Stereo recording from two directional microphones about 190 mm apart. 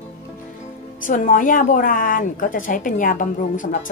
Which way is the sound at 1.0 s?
45° left (ahead or behind).